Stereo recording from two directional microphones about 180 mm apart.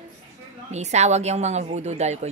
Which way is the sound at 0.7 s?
40° right (ahead or behind).